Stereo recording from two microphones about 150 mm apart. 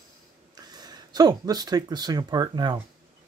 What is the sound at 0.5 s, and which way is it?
Speech, 25° right (ahead or behind).